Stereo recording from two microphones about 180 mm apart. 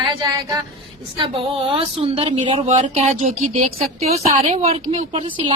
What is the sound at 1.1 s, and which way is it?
A woman's voice, 25° right (ahead or behind).